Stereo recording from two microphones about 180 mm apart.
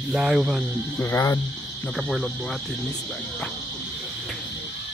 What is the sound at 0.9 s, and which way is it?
Speech, 15° left (ahead or behind).